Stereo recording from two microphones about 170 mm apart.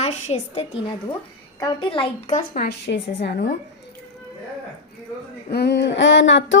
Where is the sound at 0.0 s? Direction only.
40° left (ahead or behind).